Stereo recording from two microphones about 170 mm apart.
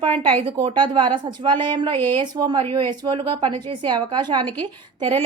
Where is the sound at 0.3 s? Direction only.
30° right (ahead or behind).